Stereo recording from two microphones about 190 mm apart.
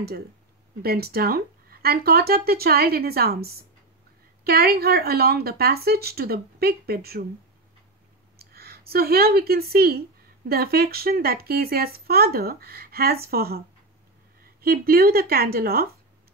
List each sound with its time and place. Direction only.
0.8 s speech: 55° right (ahead or behind)
8.4 s speech: 55° right (ahead or behind)